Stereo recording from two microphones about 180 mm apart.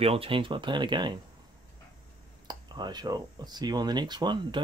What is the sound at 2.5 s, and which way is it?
Speech, 25° right (ahead or behind).